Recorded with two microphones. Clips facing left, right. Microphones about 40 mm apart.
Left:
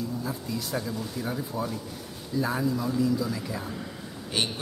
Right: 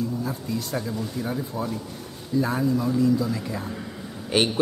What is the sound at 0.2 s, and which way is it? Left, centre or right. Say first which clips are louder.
A man's voice: right 3 dB; centre.